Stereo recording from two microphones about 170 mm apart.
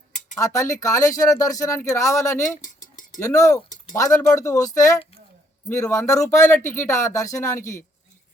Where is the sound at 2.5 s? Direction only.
50° left (ahead or behind).